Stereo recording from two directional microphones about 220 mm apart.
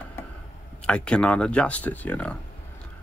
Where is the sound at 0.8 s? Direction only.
5° left (ahead or behind).